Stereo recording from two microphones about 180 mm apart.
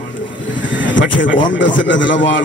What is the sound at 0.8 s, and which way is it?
Vehicle, 90° left.